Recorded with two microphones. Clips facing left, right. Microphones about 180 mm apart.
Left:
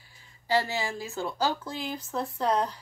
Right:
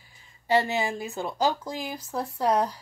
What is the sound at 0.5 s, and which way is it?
A woman's voice, 20° right (ahead or behind).